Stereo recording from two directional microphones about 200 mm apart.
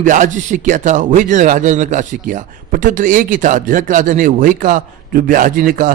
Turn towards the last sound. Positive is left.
turn(degrees=-45)  # may be behind; listen again after turning